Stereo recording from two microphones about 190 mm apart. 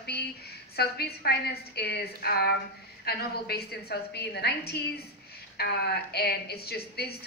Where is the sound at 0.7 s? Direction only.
55° left (ahead or behind).